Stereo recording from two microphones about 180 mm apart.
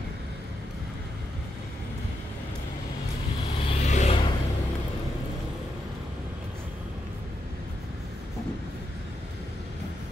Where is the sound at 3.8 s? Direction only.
40° left (ahead or behind).